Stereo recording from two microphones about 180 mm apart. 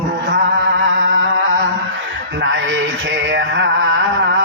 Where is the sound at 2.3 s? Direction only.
85° right.